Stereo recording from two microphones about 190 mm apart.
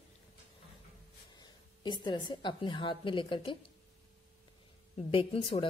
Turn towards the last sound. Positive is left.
turn(degrees=30)  # may be behind; listen again after turning